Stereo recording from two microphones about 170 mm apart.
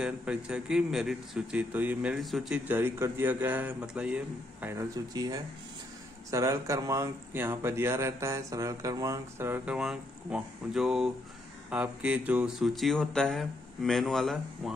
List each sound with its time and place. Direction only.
0.0 s speech: 5° right (ahead or behind)
2.7 s speech: 10° right (ahead or behind)